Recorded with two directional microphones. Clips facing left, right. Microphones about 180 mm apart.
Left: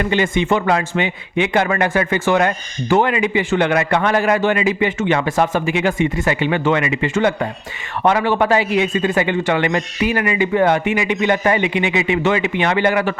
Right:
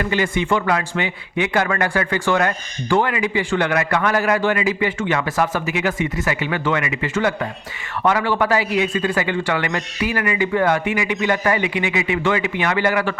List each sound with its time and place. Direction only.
0.0 s a man's voice: 25° left (ahead or behind)